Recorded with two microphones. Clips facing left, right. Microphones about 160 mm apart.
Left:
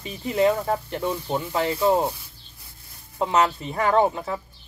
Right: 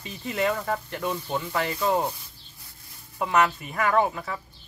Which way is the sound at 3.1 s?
25° left (ahead or behind).